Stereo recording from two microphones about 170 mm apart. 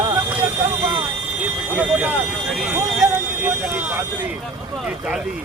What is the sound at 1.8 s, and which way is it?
Speech, 10° right (ahead or behind).